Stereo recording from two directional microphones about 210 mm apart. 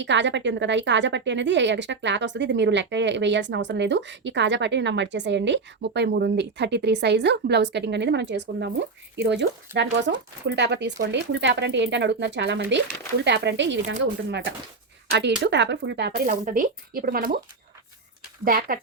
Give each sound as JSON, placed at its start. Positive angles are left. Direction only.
{"t": 0.0, "sound": "a woman's voice", "side_deg": -55}
{"t": 18.4, "sound": "speech", "side_deg": -45}